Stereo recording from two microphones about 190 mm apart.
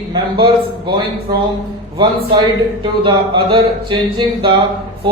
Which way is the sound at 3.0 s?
25° right (ahead or behind).